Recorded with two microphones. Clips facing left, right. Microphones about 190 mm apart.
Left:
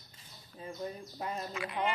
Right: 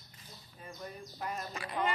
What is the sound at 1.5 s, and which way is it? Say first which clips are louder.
Speech: left 3 dB; 35° right (ahead or behind).